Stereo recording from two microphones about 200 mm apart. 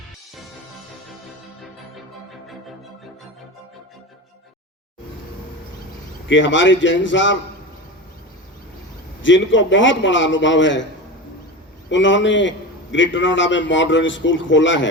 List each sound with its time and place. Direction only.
6.2 s a man's voice: 65° left (ahead or behind)
9.2 s a man's voice: 70° left (ahead or behind)
11.9 s a man's voice: 65° left (ahead or behind)